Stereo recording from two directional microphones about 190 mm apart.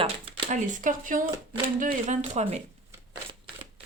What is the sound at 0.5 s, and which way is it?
Speech, 40° right (ahead or behind).